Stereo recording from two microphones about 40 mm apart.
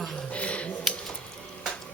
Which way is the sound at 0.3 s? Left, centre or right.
Left.